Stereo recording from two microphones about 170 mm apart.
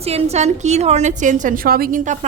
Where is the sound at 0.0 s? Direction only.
35° right (ahead or behind).